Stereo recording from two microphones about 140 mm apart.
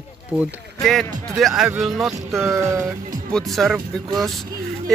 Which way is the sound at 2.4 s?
20° right (ahead or behind).